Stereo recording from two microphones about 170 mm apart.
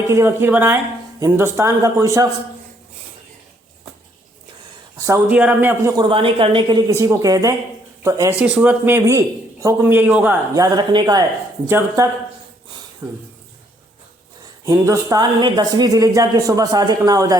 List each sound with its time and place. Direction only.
0.1 s a man's voice: 15° right (ahead or behind)
4.9 s a sound: 20° right (ahead or behind)
5.3 s a man's voice: 10° right (ahead or behind)
6.0 s speech: 30° right (ahead or behind)
8.4 s a man's voice: 5° right (ahead or behind)
10.5 s speech: 25° right (ahead or behind)
13.0 s a man's voice: 15° right (ahead or behind)
14.6 s speech: 20° right (ahead or behind)